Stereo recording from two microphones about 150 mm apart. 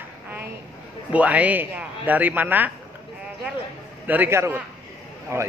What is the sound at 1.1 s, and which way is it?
A man's voice, 10° right (ahead or behind).